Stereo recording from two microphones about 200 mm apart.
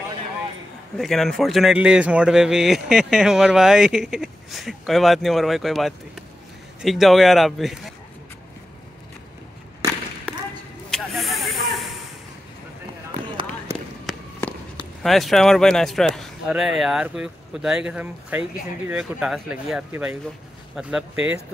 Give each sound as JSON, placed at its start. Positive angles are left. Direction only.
{"t": 0.9, "sound": "a man's voice", "side_deg": 0}
{"t": 10.9, "sound": "snake", "side_deg": 0}
{"t": 13.1, "sound": "a sound", "side_deg": -20}
{"t": 15.0, "sound": "a man's voice", "side_deg": 0}